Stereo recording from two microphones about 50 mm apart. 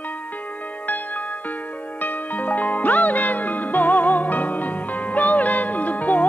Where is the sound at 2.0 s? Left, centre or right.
Left.